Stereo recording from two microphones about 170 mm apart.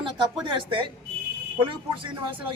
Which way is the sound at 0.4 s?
30° right (ahead or behind).